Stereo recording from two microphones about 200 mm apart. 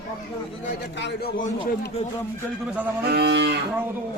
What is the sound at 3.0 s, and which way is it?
Moo, 55° right (ahead or behind).